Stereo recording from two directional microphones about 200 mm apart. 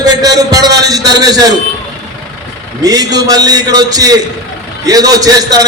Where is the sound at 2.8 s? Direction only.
20° right (ahead or behind).